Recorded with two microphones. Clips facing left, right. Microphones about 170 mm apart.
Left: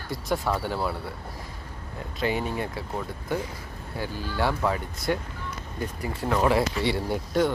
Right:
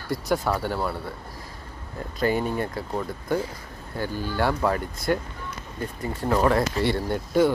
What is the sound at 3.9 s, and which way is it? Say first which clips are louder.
Speech: right 3 dB; centre (ahead or behind).